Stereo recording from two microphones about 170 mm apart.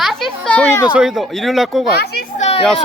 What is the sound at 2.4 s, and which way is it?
Children playing, 40° left (ahead or behind).